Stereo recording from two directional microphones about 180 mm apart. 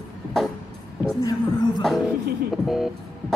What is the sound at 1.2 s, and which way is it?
Music, 20° left (ahead or behind).